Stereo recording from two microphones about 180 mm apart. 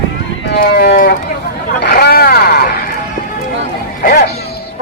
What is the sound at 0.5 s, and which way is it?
Livestock, 60° left (ahead or behind).